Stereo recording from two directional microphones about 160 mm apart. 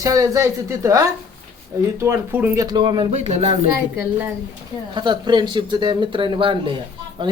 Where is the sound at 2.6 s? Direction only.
30° right (ahead or behind).